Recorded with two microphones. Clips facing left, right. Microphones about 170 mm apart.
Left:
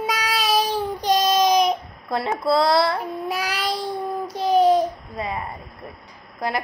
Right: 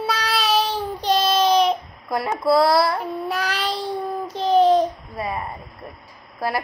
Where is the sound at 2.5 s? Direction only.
20° left (ahead or behind).